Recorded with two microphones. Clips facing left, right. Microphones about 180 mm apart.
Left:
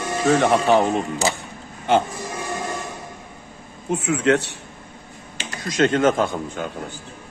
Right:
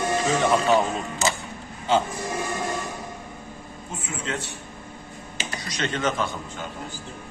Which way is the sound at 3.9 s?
70° left (ahead or behind).